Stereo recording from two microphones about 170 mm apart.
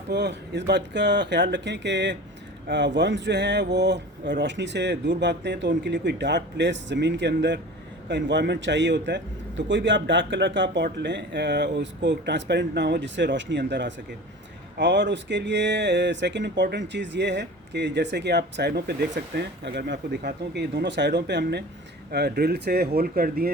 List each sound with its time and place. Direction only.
0.1 s speech: 90° right
22.1 s speech: 70° right (ahead or behind)